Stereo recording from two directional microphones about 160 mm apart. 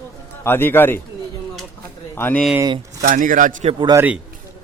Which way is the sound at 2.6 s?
25° right (ahead or behind).